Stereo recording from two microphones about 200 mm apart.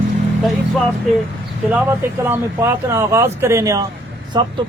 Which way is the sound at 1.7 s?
10° right (ahead or behind).